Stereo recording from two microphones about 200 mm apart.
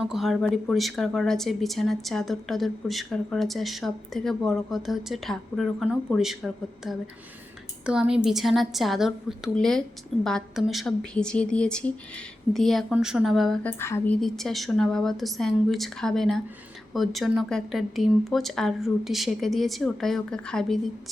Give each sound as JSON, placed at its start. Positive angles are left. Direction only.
{"t": 0.0, "sound": "speech", "side_deg": 0}
{"t": 14.2, "sound": "speech", "side_deg": 0}